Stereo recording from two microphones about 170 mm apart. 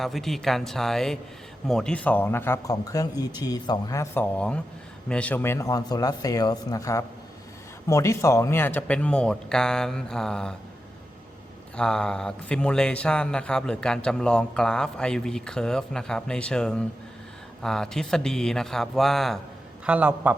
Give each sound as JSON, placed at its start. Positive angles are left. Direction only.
{"t": 0.0, "sound": "speech", "side_deg": 0}
{"t": 11.8, "sound": "a man's voice", "side_deg": 5}